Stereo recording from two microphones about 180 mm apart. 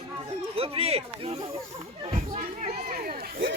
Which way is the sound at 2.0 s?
35° right (ahead or behind).